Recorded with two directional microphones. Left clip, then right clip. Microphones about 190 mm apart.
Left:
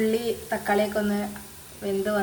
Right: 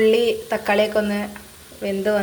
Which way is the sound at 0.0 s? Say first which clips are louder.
Right 9 dB; 30° right (ahead or behind).